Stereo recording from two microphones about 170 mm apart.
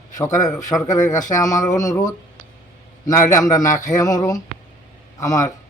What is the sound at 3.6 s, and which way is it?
Speech, 50° left (ahead or behind).